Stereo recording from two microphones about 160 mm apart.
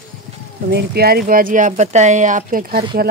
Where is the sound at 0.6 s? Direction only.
85° right; by 2.8 s 60° right (ahead or behind).